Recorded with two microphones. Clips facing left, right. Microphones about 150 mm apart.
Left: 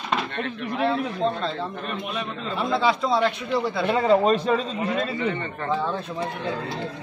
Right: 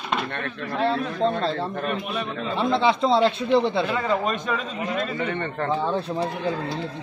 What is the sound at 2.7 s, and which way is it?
Speech, 25° right (ahead or behind).